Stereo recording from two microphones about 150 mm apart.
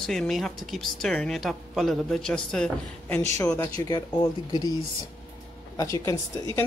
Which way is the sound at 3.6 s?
25° left (ahead or behind).